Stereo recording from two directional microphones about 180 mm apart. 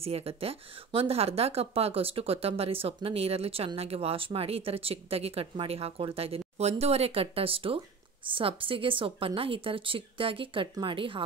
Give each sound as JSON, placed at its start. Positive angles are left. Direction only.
{"t": 0.0, "sound": "a woman's voice", "side_deg": -35}